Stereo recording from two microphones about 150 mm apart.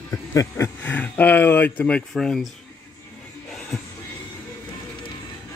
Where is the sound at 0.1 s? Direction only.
20° left (ahead or behind).